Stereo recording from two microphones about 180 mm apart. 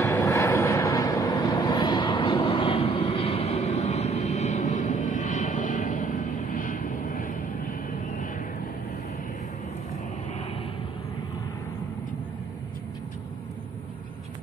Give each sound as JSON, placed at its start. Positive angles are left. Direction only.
{"t": 0.0, "sound": "vehicle", "side_deg": 15}